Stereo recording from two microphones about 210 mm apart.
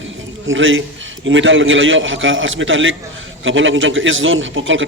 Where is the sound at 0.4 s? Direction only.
65° right (ahead or behind).